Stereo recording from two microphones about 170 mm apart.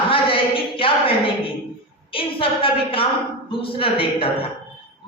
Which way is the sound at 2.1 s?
30° left (ahead or behind).